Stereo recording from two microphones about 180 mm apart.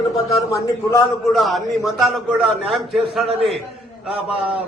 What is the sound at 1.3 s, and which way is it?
A man's voice, centre (ahead or behind).